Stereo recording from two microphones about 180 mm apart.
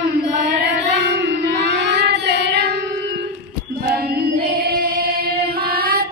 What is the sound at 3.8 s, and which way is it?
Female singing, 55° right (ahead or behind).